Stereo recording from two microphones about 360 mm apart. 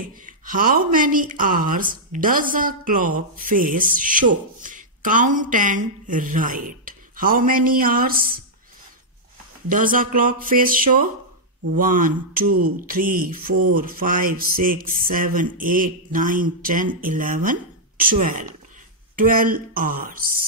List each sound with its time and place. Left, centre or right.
0.5 s a woman's voice: right
9.7 s a woman's voice: right